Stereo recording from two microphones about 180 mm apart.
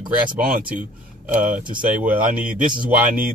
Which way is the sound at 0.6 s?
50° right (ahead or behind).